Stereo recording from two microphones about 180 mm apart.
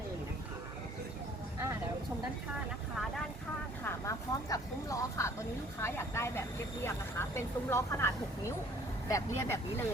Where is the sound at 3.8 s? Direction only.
15° left (ahead or behind).